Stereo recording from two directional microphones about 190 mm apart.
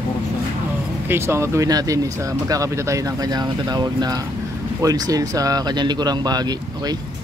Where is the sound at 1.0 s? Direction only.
15° right (ahead or behind).